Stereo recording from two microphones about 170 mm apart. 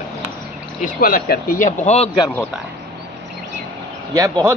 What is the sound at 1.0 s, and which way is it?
Speech, 55° left (ahead or behind).